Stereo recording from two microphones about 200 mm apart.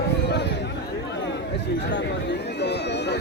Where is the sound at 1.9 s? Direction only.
60° left (ahead or behind).